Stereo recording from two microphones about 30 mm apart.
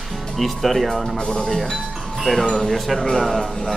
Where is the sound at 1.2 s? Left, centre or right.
Left.